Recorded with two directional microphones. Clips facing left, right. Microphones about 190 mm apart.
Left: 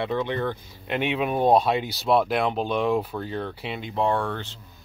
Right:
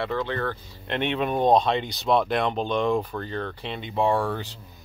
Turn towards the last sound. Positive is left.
turn(degrees=-5)  # may be behind; listen again after turning